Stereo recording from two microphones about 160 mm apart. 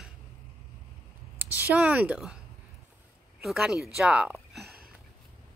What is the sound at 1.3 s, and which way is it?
A woman's voice, 10° right (ahead or behind).